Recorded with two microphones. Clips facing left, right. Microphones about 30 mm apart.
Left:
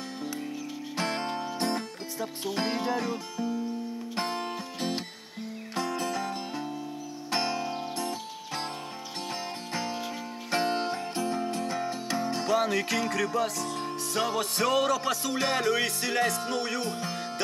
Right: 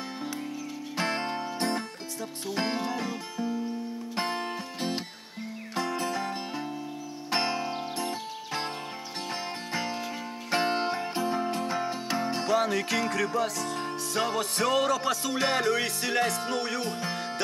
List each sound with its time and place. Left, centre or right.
0.9 s music: centre
4.1 s music: centre
12.5 s music: centre